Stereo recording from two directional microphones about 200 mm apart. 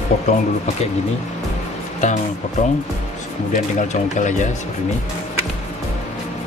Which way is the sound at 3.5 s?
40° left (ahead or behind).